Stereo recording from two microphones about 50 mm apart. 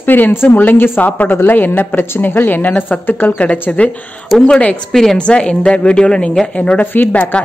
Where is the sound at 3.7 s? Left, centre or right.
Centre.